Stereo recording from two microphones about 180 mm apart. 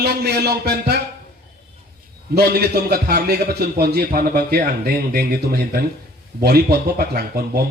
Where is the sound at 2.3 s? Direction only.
60° right (ahead or behind).